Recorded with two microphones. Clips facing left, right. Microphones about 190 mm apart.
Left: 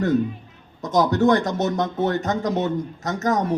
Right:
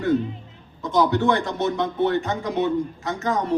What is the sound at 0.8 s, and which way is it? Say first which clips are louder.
A man's voice: left 1 dB; 40° left (ahead or behind).